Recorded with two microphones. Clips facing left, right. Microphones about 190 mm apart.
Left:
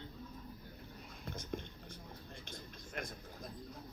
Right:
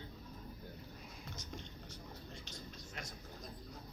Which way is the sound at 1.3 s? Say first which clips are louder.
Left 8 dB; 55° left (ahead or behind).